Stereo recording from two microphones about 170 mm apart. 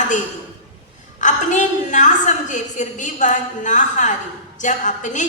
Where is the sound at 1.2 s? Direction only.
45° left (ahead or behind).